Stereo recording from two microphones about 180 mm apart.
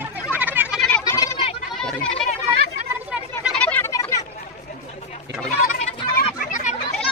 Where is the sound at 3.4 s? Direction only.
5° left (ahead or behind).